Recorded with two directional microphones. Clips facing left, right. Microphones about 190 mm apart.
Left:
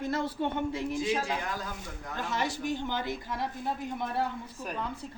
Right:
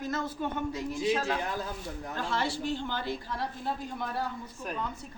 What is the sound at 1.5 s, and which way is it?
Speech, 25° right (ahead or behind).